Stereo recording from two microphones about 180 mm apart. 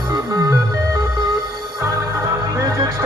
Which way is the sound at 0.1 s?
20° right (ahead or behind).